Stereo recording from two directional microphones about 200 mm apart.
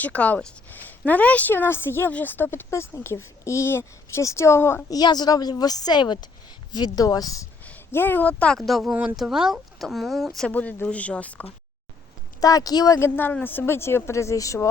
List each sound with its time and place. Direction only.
0.0 s a woman's voice: 5° left (ahead or behind)
12.4 s a woman's voice: 15° left (ahead or behind)